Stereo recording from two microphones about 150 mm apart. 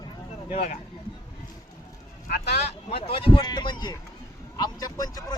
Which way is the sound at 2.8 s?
40° left (ahead or behind).